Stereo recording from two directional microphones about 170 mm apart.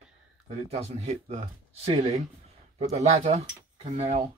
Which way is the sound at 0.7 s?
40° right (ahead or behind).